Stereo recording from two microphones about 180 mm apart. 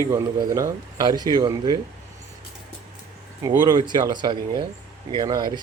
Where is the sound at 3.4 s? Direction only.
20° right (ahead or behind).